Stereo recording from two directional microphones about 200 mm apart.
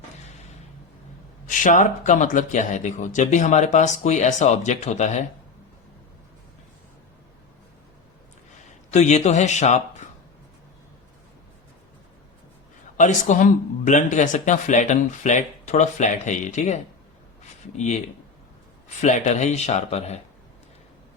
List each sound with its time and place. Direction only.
1.5 s speech: 40° left (ahead or behind)
8.9 s speech: 35° left (ahead or behind)
13.0 s speech: 40° left (ahead or behind)
19.0 s speech: 35° left (ahead or behind)